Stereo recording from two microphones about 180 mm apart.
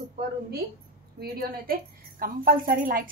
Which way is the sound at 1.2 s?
55° right (ahead or behind).